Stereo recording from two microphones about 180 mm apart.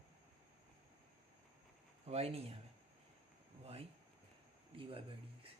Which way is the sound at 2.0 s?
35° right (ahead or behind).